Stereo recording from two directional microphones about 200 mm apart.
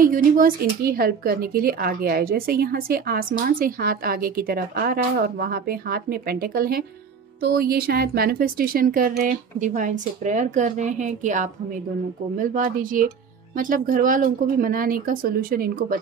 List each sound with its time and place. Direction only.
0.0 s a woman's voice: 45° right (ahead or behind)